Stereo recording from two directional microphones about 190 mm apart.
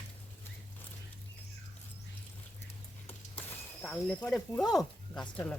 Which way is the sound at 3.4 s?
5° left (ahead or behind).